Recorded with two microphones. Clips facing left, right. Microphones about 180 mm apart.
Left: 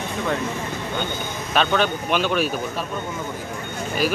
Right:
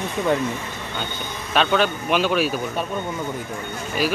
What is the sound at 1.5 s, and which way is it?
Speech, centre (ahead or behind).